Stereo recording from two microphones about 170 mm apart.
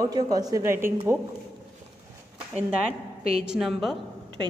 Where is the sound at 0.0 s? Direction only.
20° right (ahead or behind).